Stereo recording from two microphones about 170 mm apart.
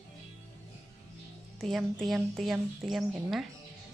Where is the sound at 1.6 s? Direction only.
Centre (ahead or behind).